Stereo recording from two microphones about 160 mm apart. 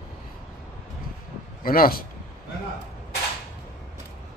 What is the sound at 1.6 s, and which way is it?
Speech, 65° left (ahead or behind).